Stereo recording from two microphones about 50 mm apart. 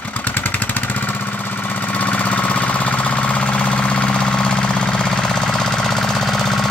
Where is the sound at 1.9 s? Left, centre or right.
Left.